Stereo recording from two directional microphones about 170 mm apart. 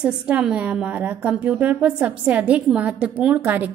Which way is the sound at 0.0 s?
5° right (ahead or behind).